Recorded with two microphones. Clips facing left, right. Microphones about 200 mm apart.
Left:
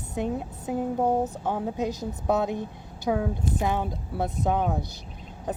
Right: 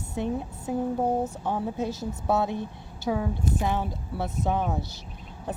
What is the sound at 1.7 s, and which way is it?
Speech, 15° left (ahead or behind).